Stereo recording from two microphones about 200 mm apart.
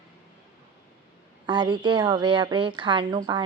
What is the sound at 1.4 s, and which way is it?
A woman's voice, 25° right (ahead or behind).